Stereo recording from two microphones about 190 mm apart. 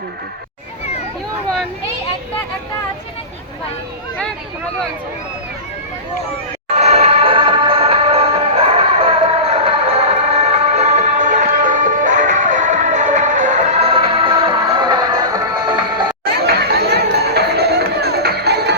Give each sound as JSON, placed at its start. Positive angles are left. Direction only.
{"t": 6.7, "sound": "music", "side_deg": -35}
{"t": 16.2, "sound": "music", "side_deg": -55}